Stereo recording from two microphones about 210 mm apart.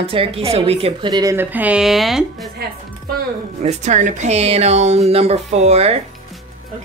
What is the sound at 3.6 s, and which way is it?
A woman's voice, 35° right (ahead or behind).